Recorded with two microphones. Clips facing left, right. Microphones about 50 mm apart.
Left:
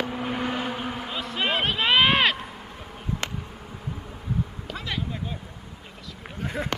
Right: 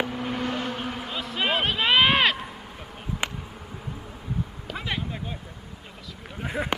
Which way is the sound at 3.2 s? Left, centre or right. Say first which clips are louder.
Right 4 dB; centre.